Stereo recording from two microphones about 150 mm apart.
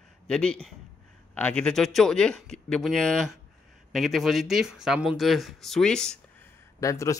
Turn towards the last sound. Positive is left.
turn(degrees=20)  # may be behind; listen again after turning